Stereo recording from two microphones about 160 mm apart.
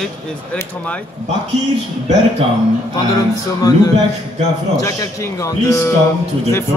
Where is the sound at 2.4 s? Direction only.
35° right (ahead or behind).